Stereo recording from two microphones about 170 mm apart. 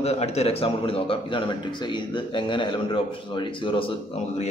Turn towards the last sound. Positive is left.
turn(degrees=35)  # may be behind; listen again after turning